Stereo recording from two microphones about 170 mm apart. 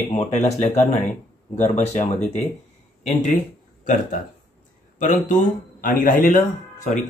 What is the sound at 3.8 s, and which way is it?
Speech, 50° left (ahead or behind).